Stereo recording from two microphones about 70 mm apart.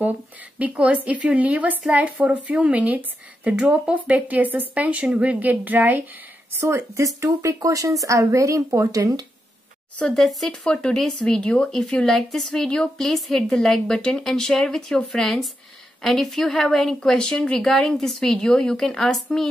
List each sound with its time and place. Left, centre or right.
0.6 s a woman's voice: centre
6.6 s speech: right
9.9 s speech: centre